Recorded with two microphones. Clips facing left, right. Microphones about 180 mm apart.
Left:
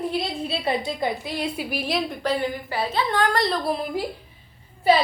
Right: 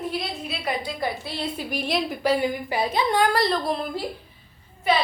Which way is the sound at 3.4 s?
Centre (ahead or behind).